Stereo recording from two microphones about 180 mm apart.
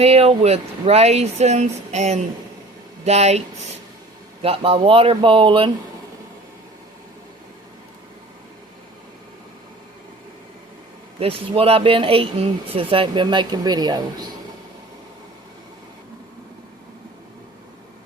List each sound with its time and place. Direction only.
0.0 s speech: 35° right (ahead or behind)
4.4 s speech: 30° right (ahead or behind)
11.2 s speech: 30° right (ahead or behind)